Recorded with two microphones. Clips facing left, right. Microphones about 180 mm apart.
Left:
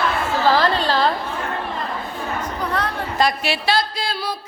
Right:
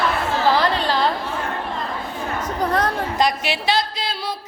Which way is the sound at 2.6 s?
45° right (ahead or behind).